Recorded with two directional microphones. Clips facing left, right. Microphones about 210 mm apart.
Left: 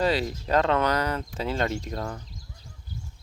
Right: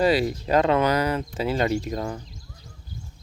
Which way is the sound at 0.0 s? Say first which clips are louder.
Right 4 dB; 10° right (ahead or behind).